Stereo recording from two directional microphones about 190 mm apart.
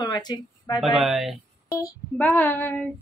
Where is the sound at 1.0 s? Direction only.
Centre (ahead or behind).